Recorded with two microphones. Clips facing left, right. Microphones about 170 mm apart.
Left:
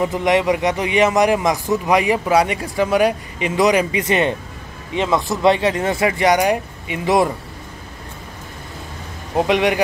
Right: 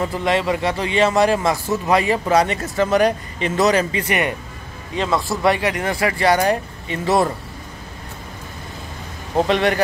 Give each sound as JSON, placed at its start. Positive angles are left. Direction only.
{"t": 0.0, "sound": "a man's voice", "side_deg": 15}
{"t": 9.5, "sound": "a man's voice", "side_deg": 10}